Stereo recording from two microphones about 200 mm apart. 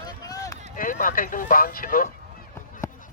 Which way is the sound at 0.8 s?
45° left (ahead or behind).